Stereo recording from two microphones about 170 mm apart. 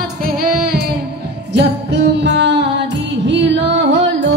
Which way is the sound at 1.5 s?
90° right.